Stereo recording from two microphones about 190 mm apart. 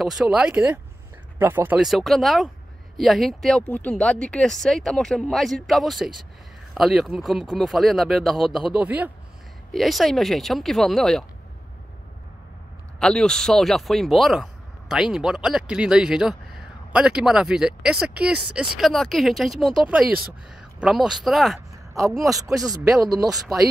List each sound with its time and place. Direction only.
0.0 s speech: centre (ahead or behind)
13.0 s speech: 5° left (ahead or behind)
22.8 s speech: 20° right (ahead or behind)